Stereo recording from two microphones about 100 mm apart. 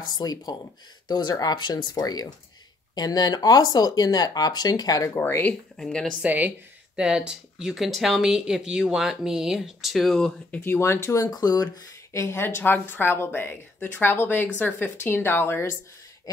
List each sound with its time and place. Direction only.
0.2 s speech: 40° left (ahead or behind)
5.1 s a woman's voice: 20° left (ahead or behind)
5.8 s speech: 5° left (ahead or behind)
6.2 s speech: 15° right (ahead or behind); by 10.6 s 5° left (ahead or behind)
10.6 s a woman's voice: 25° left (ahead or behind)
11.2 s speech: 40° left (ahead or behind)
12.2 s a woman's voice: 25° left (ahead or behind)